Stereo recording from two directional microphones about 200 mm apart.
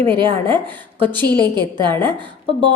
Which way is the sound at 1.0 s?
10° left (ahead or behind).